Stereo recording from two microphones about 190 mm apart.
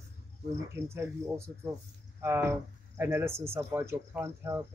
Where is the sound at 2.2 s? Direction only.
15° right (ahead or behind).